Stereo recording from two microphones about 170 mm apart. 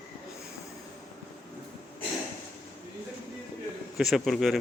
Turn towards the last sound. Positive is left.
turn(degrees=0)  # may be behind; listen again after turning